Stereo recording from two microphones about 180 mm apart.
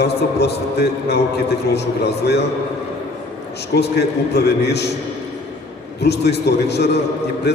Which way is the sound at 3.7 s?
65° left (ahead or behind).